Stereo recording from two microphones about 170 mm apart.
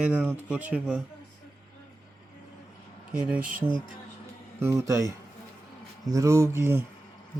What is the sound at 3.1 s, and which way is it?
Speech, 5° right (ahead or behind).